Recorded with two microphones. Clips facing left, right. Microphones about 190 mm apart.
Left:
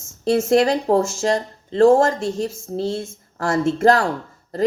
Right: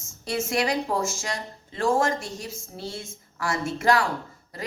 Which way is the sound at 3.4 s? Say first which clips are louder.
Left 10 dB; 45° left (ahead or behind).